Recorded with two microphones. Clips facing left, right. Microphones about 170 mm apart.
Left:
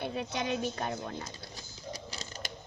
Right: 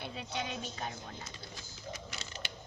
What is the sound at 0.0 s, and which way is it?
Speech, 55° left (ahead or behind).